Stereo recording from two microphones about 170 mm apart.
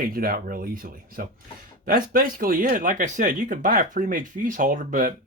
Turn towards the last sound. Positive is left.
turn(degrees=-50)  # may be behind; listen again after turning